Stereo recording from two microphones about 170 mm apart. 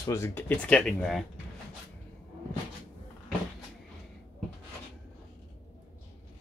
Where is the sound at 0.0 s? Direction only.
15° left (ahead or behind).